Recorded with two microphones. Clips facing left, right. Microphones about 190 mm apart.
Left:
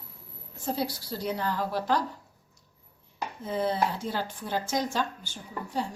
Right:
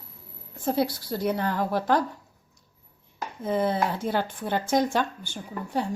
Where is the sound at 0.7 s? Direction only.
50° right (ahead or behind).